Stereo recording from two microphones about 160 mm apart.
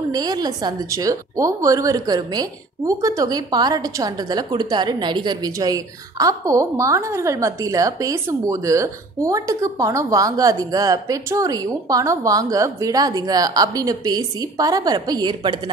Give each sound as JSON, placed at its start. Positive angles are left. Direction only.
{"t": 0.1, "sound": "a woman's voice", "side_deg": -25}